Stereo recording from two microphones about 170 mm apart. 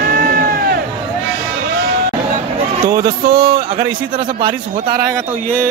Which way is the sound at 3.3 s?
35° right (ahead or behind).